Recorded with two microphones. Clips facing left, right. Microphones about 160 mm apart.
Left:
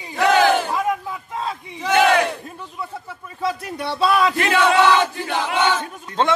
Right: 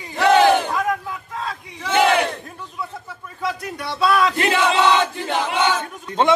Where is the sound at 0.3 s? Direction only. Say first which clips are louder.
Right 2 dB; 20° right (ahead or behind).